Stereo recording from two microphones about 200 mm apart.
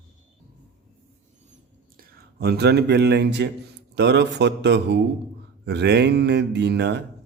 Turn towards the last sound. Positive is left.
turn(degrees=-60)  # may be behind; listen again after turning